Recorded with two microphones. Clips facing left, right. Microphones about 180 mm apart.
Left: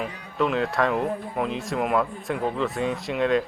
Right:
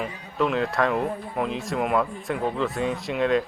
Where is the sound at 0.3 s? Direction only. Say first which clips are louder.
Even; centre (ahead or behind).